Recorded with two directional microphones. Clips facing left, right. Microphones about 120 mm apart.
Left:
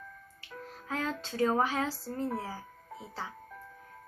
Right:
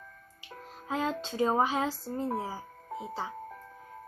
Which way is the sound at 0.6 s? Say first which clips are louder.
Right 3 dB; 20° right (ahead or behind).